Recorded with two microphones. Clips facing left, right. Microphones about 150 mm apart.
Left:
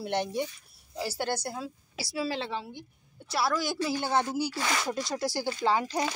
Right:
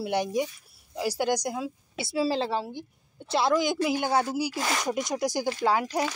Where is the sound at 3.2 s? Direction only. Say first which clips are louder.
Right 5 dB; 25° right (ahead or behind).